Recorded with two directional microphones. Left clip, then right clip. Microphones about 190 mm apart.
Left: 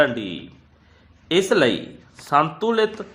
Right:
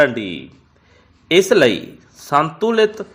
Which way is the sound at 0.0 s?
15° right (ahead or behind).